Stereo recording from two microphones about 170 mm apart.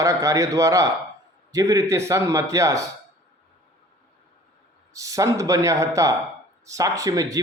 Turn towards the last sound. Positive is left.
turn(degrees=-20)  # may be behind; listen again after turning